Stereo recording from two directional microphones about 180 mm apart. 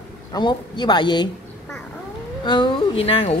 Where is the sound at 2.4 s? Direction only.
25° left (ahead or behind).